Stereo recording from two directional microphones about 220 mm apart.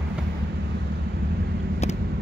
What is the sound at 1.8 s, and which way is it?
Vehicle, 30° left (ahead or behind).